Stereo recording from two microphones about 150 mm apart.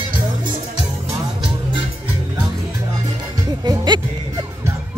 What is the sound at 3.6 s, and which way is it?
Music, 30° right (ahead or behind).